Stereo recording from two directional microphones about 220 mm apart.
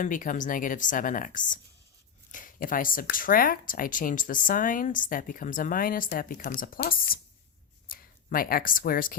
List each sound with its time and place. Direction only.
0.0 s speech: 35° left (ahead or behind)